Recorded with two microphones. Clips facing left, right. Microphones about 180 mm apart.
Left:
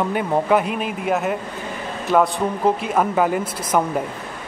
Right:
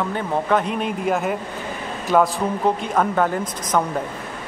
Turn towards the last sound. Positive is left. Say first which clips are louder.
# left 1 dB
turn(degrees=10)  # may be behind; listen again after turning